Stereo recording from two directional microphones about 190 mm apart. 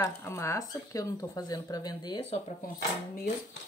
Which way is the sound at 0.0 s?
15° left (ahead or behind).